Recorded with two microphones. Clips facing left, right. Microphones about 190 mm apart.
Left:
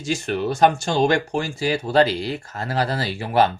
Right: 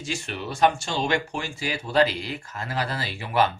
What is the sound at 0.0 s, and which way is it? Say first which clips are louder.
Speech: left 9 dB; 40° left (ahead or behind).